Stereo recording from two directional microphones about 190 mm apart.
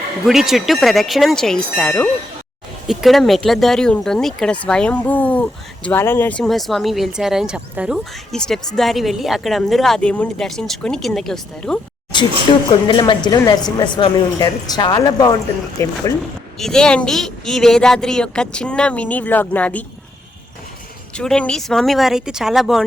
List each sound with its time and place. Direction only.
0.3 s speech: centre (ahead or behind)
12.5 s a woman's voice: 25° left (ahead or behind)
16.6 s speech: 5° left (ahead or behind)
21.1 s speech: 5° left (ahead or behind)